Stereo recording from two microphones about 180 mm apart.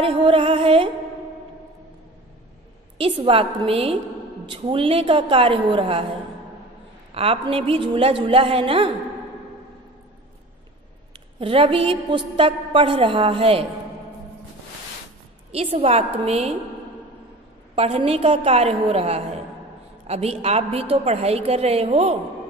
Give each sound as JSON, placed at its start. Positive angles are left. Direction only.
{"t": 0.0, "sound": "music", "side_deg": -30}
{"t": 3.0, "sound": "a woman's voice", "side_deg": -30}
{"t": 7.2, "sound": "a woman's voice", "side_deg": -30}
{"t": 11.1, "sound": "a woman's voice", "side_deg": -30}
{"t": 15.5, "sound": "a woman's voice", "side_deg": -35}
{"t": 17.7, "sound": "a woman's voice", "side_deg": -30}